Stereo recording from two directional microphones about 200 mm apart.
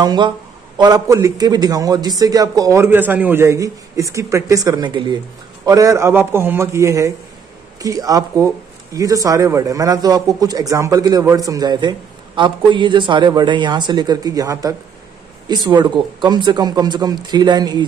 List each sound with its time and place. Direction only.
0.0 s a man's voice: 20° right (ahead or behind)